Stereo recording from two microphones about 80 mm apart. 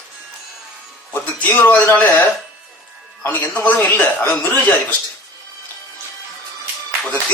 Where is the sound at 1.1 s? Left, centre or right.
Left.